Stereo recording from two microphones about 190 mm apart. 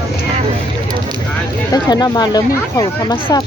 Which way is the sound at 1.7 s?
20° left (ahead or behind).